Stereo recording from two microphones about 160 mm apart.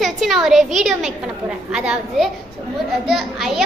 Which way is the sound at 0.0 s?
Centre (ahead or behind).